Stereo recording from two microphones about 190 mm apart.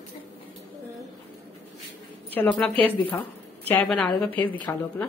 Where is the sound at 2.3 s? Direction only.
5° left (ahead or behind).